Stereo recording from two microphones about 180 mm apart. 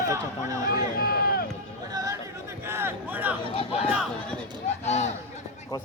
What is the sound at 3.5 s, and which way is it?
Speech, 35° left (ahead or behind).